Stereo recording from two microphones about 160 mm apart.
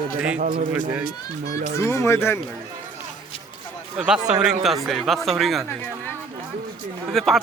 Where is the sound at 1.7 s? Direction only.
15° left (ahead or behind).